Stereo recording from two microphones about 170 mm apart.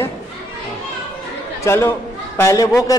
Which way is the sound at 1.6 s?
15° left (ahead or behind).